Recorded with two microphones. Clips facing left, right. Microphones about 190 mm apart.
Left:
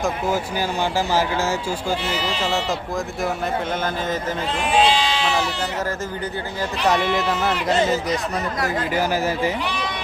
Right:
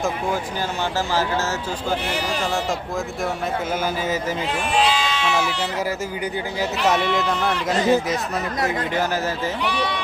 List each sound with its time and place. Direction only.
2.0 s speech: 45° right (ahead or behind)
4.8 s speech: 35° left (ahead or behind)
6.8 s speech: centre (ahead or behind)